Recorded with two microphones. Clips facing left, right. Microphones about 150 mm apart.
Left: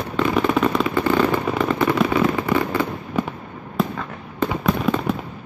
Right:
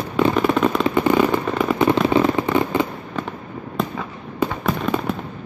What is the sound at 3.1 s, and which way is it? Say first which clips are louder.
Fireworks: left 4 dB; 10° left (ahead or behind).